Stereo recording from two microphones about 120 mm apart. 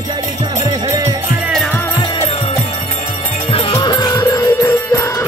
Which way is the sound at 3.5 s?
45° left (ahead or behind).